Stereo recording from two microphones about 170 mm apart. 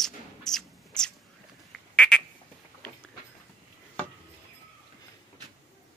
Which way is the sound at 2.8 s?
5° left (ahead or behind).